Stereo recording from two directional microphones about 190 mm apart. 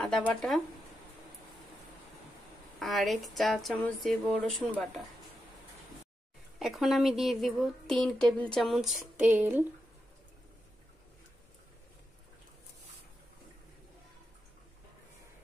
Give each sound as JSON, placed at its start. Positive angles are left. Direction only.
{"t": 0.0, "sound": "speech", "side_deg": 5}
{"t": 2.8, "sound": "speech", "side_deg": 0}
{"t": 6.6, "sound": "speech", "side_deg": 0}